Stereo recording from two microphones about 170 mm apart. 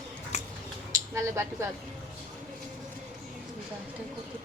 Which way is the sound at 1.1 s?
15° right (ahead or behind).